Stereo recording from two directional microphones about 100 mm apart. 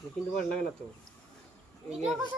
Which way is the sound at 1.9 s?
5° right (ahead or behind).